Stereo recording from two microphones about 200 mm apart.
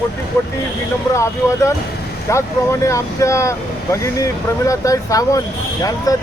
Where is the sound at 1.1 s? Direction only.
15° left (ahead or behind).